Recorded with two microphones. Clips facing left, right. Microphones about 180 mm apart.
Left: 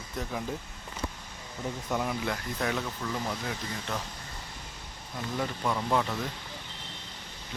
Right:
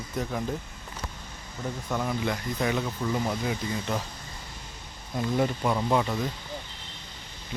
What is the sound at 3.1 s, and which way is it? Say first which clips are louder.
Speech: right 6 dB; 15° right (ahead or behind).